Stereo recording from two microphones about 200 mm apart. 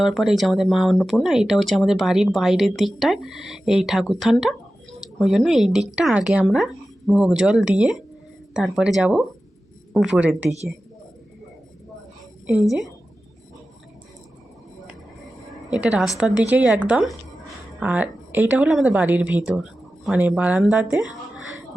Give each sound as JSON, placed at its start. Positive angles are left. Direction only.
{"t": 0.0, "sound": "speech", "side_deg": 0}
{"t": 15.7, "sound": "speech", "side_deg": -5}